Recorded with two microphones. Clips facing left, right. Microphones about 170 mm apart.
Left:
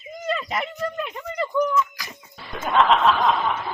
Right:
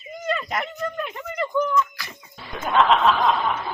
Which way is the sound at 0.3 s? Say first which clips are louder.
Even; centre (ahead or behind).